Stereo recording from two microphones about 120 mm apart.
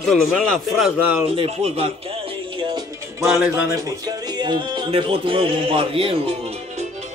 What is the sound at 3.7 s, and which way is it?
A man's voice, 35° right (ahead or behind).